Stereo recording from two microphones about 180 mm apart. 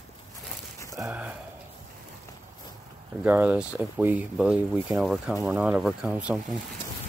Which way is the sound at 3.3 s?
10° right (ahead or behind).